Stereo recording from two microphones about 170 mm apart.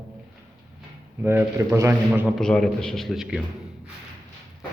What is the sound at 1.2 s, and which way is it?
A man's voice, 10° right (ahead or behind).